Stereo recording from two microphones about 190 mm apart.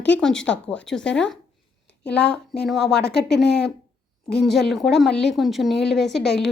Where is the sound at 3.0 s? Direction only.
60° left (ahead or behind).